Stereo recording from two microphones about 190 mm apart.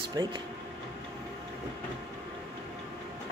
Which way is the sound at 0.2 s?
20° right (ahead or behind).